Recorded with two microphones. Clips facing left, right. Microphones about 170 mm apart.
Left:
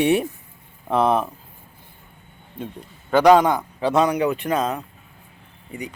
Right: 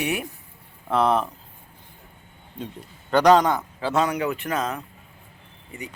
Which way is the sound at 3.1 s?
10° left (ahead or behind).